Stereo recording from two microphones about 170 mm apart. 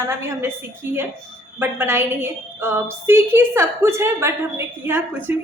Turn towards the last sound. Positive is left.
turn(degrees=-15)  # may be behind; listen again after turning